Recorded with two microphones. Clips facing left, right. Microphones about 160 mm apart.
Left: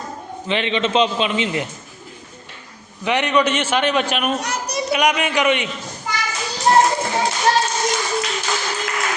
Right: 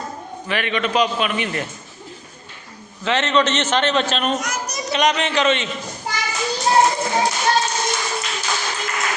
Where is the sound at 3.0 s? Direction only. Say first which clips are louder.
Left 1 dB; 15° left (ahead or behind).